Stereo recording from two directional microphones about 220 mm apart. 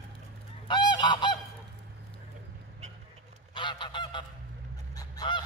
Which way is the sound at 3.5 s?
20° left (ahead or behind).